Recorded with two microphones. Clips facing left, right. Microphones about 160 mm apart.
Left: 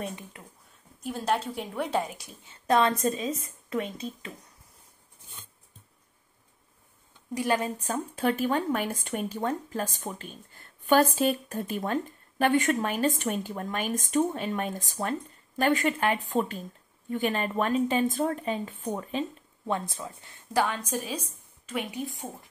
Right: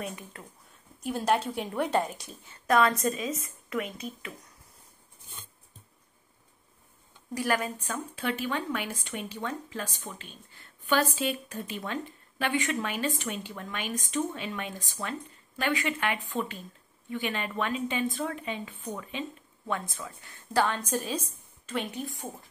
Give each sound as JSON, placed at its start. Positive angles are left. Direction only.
{"t": 0.3, "sound": "a woman's voice", "side_deg": 15}
{"t": 1.0, "sound": "a woman's voice", "side_deg": 0}
{"t": 2.4, "sound": "a woman's voice", "side_deg": 25}
{"t": 7.3, "sound": "a woman's voice", "side_deg": 25}
{"t": 19.7, "sound": "speech", "side_deg": 30}
{"t": 20.5, "sound": "a woman's voice", "side_deg": 5}